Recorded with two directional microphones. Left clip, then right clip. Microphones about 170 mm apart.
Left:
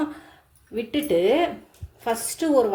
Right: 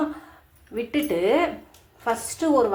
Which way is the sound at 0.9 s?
55° left (ahead or behind).